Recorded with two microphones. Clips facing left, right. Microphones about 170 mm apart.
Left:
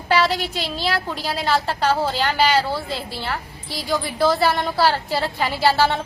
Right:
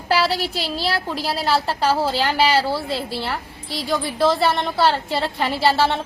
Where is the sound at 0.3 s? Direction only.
35° right (ahead or behind).